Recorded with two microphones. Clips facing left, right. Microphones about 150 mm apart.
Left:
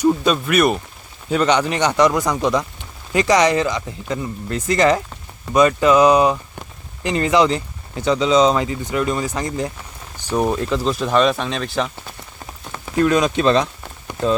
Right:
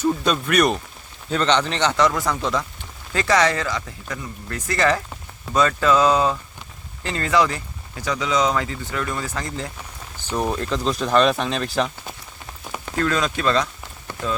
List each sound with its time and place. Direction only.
0.3 s a man's voice: 5° left (ahead or behind)
12.8 s speech: 15° left (ahead or behind)